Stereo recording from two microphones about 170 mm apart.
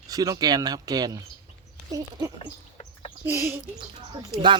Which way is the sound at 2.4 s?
40° left (ahead or behind).